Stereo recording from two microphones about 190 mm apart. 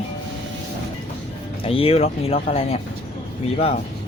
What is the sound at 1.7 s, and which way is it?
Speech, 30° left (ahead or behind).